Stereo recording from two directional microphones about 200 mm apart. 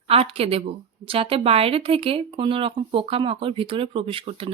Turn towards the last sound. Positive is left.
turn(degrees=-25)  # may be behind; listen again after turning